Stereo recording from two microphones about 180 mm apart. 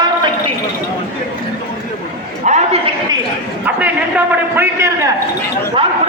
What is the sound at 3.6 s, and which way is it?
A man's voice, 10° right (ahead or behind).